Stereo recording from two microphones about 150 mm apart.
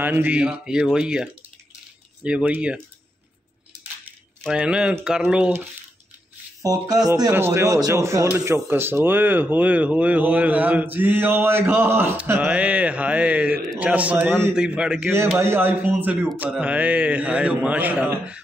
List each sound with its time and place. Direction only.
0.0 s a man's voice: 10° right (ahead or behind)
4.5 s a man's voice: 5° right (ahead or behind)
6.6 s a man's voice: 25° right (ahead or behind); by 15.1 s 5° right (ahead or behind)
15.1 s a man's voice: 15° right (ahead or behind)